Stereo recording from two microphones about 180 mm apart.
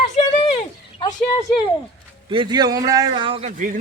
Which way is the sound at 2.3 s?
25° right (ahead or behind).